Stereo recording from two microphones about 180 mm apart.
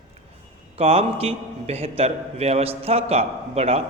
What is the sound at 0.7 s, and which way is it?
A man's voice, 35° right (ahead or behind).